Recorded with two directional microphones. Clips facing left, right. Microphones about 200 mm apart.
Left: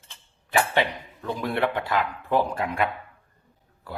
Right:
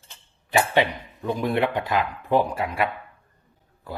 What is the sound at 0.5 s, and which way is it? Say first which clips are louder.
Speech: right 2 dB; 20° right (ahead or behind).